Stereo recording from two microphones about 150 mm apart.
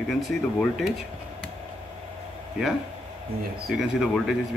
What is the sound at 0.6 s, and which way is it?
Speech, centre (ahead or behind).